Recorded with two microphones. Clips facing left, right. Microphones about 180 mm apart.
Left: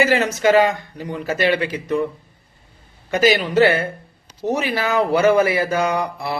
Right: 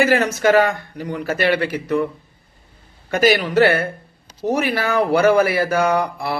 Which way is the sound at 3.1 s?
50° right (ahead or behind).